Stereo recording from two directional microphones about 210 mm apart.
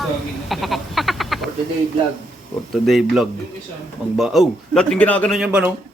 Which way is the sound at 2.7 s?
Centre (ahead or behind).